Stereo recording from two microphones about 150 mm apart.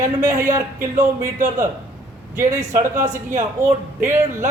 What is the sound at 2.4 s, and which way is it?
Speech, 20° right (ahead or behind).